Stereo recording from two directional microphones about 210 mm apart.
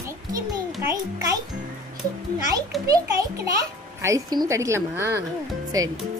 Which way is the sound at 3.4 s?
15° right (ahead or behind).